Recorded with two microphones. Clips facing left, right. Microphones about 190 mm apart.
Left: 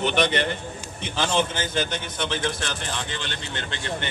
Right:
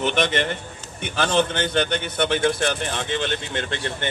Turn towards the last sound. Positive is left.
turn(degrees=-55)  # may be behind; listen again after turning